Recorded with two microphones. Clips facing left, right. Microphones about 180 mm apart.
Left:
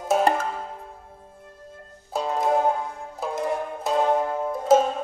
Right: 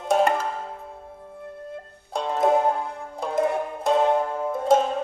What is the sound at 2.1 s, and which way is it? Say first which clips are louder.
Music: right 2 dB; 5° left (ahead or behind).